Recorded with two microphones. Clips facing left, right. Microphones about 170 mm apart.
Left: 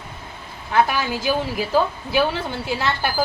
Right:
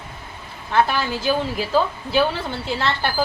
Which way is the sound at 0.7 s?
10° left (ahead or behind).